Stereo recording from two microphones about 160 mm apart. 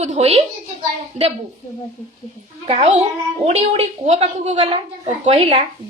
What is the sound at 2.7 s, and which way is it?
A woman's voice, 35° right (ahead or behind).